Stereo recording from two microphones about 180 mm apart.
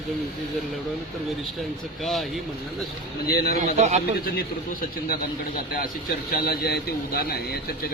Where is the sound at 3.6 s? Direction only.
40° right (ahead or behind).